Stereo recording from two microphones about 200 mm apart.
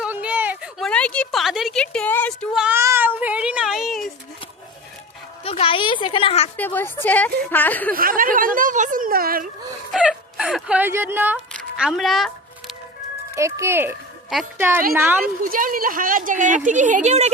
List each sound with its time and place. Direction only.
0.0 s a sound: 5° right (ahead or behind)
2.6 s a sound: 10° right (ahead or behind)
5.4 s speech: 30° left (ahead or behind)
6.6 s a woman's voice: 10° left (ahead or behind)
7.9 s speech: 45° right (ahead or behind)
9.9 s speech: 5° right (ahead or behind)
11.8 s a sound: centre (ahead or behind)
13.3 s speech: 15° right (ahead or behind)
14.3 s speech: centre (ahead or behind)
15.4 s speech: 45° right (ahead or behind)